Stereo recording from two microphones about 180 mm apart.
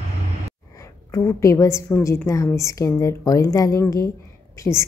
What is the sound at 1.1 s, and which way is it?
A woman's voice, 15° left (ahead or behind).